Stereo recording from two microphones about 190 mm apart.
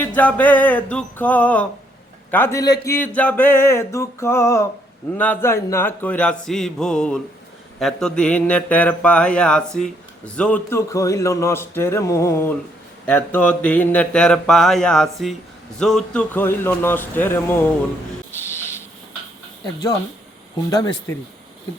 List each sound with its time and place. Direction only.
0.0 s a man's voice: 10° left (ahead or behind)
18.3 s a sound: 15° left (ahead or behind)
19.6 s a man's voice: 20° left (ahead or behind)